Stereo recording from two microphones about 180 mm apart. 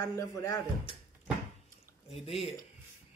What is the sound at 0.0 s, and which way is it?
Speech, 20° left (ahead or behind).